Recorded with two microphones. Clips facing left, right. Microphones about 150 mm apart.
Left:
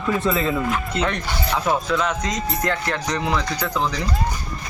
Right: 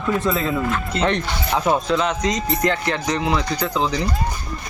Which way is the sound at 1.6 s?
20° right (ahead or behind).